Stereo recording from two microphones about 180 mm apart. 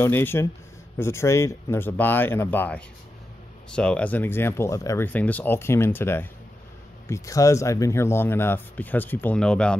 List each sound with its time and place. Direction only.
0.0 s speech: 10° left (ahead or behind)